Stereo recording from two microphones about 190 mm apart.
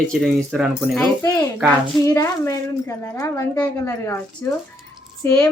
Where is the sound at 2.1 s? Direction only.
15° left (ahead or behind).